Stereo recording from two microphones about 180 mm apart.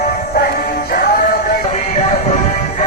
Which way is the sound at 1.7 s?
40° left (ahead or behind).